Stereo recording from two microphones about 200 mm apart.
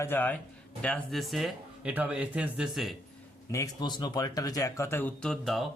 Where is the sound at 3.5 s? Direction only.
20° left (ahead or behind); by 5.6 s centre (ahead or behind).